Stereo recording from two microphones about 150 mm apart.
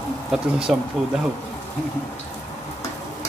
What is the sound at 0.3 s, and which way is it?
Speech, 5° right (ahead or behind).